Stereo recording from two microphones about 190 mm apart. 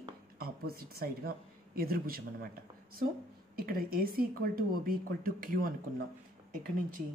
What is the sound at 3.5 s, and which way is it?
Speech, 50° right (ahead or behind).